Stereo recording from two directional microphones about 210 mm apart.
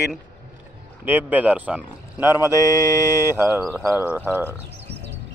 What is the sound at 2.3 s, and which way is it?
Mantra, 15° left (ahead or behind).